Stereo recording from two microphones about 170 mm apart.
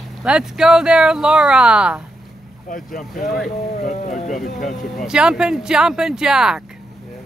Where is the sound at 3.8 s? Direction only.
45° left (ahead or behind).